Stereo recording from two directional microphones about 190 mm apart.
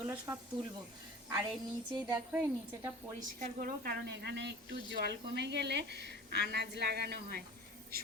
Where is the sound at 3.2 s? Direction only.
45° right (ahead or behind).